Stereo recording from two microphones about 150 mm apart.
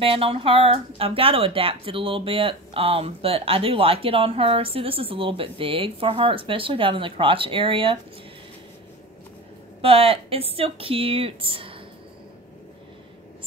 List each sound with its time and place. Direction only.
0.0 s speech: 40° right (ahead or behind)
9.8 s speech: 40° right (ahead or behind)